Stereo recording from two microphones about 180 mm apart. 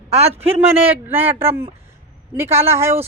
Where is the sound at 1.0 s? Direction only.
10° right (ahead or behind).